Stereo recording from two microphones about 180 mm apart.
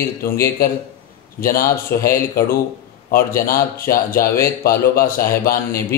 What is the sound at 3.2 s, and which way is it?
Speech, 55° left (ahead or behind).